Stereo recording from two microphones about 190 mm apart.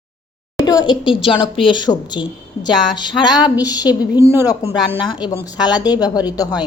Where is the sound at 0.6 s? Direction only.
20° left (ahead or behind).